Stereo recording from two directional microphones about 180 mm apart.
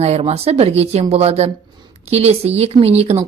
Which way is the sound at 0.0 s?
35° right (ahead or behind).